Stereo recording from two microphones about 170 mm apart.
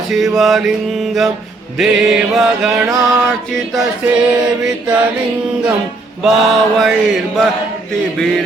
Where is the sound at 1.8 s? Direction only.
Centre (ahead or behind).